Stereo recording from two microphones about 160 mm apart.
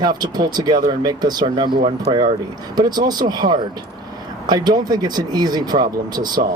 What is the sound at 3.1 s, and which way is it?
Speech, 25° right (ahead or behind).